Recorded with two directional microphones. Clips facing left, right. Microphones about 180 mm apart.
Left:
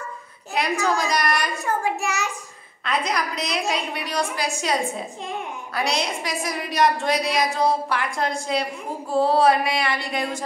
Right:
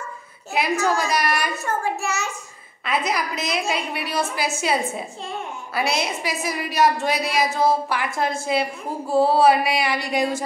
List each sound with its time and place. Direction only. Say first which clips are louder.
0.8 s a woman's voice: right 1 dB; 5° right (ahead or behind)
2.0 s child singing: even; 15° left (ahead or behind)
2.8 s a woman's voice: right 1 dB; 5° right (ahead or behind)
9.1 s a sound: right 2 dB; 5° right (ahead or behind)